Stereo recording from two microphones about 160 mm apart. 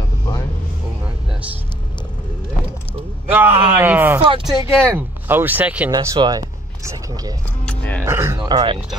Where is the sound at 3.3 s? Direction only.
10° right (ahead or behind).